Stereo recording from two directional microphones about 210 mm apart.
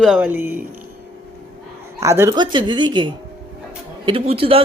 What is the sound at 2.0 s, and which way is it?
Speech, 15° right (ahead or behind).